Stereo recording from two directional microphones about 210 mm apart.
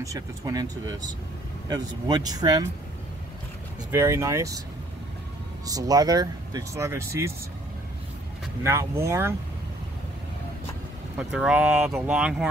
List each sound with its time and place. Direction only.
0.0 s speech: 15° right (ahead or behind)
3.9 s speech: 15° right (ahead or behind)
5.7 s speech: 15° right (ahead or behind)
8.6 s speech: 15° right (ahead or behind)
11.1 s speech: 5° right (ahead or behind)